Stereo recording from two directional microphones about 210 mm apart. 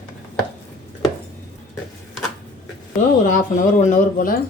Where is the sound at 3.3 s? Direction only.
40° left (ahead or behind).